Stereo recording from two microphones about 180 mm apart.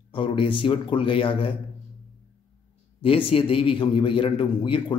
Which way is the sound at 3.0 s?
30° left (ahead or behind).